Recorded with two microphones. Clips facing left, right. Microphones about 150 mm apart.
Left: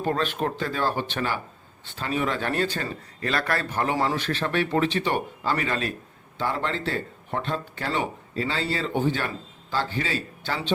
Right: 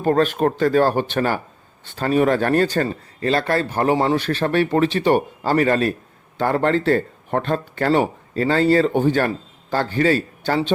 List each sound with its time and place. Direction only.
0.0 s speech: 45° right (ahead or behind)